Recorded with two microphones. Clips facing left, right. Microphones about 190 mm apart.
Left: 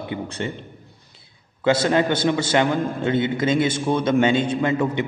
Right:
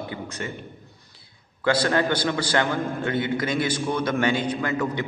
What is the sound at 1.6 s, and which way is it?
A man's voice, 20° left (ahead or behind).